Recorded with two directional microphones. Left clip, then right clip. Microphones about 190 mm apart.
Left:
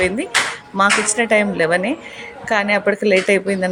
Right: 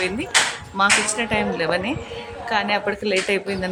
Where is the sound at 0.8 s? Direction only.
15° left (ahead or behind).